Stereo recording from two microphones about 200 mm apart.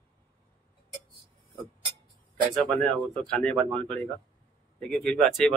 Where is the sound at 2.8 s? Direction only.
5° left (ahead or behind).